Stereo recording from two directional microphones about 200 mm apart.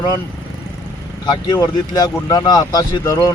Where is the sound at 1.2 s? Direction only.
20° left (ahead or behind).